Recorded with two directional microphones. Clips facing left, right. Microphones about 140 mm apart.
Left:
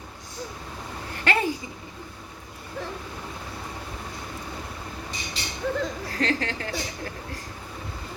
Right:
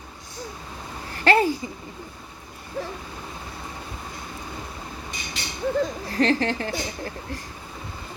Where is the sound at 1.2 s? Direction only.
35° right (ahead or behind).